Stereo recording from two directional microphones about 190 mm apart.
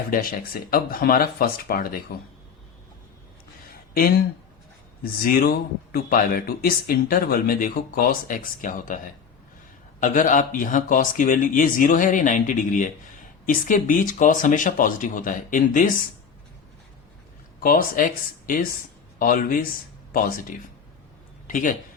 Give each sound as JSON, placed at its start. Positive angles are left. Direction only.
{"t": 0.1, "sound": "speech", "side_deg": 50}
{"t": 5.0, "sound": "speech", "side_deg": 50}
{"t": 10.0, "sound": "speech", "side_deg": 45}
{"t": 17.6, "sound": "speech", "side_deg": 45}
{"t": 21.4, "sound": "speech", "side_deg": 45}